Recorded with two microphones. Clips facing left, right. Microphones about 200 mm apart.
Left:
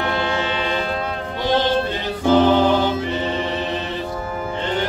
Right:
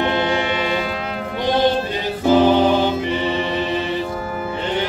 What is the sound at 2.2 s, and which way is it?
Music, 10° right (ahead or behind).